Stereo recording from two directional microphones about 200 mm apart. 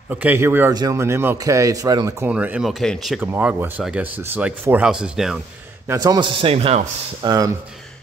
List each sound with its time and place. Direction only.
0.1 s a man's voice: 10° right (ahead or behind)
5.9 s a man's voice: 20° right (ahead or behind)
7.2 s a man's voice: 20° right (ahead or behind)